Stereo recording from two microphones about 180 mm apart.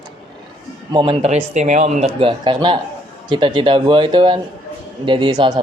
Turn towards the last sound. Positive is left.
turn(degrees=-25)  # may be behind; listen again after turning